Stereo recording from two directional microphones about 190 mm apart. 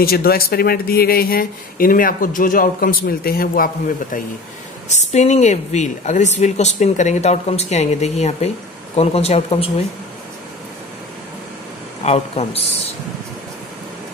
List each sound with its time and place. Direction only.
0.0 s a woman's voice: 55° left (ahead or behind); by 9.7 s 30° left (ahead or behind)
12.0 s a man's voice: 35° left (ahead or behind)